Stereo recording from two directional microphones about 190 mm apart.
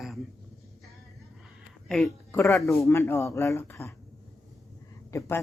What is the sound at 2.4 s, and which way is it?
Speech, 15° left (ahead or behind).